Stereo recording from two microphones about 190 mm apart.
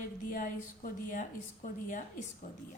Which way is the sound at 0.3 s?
45° left (ahead or behind).